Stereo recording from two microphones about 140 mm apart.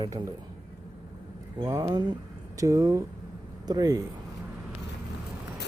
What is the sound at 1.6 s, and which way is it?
Speech, 25° right (ahead or behind).